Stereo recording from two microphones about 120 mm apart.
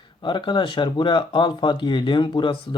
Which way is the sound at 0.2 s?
40° left (ahead or behind).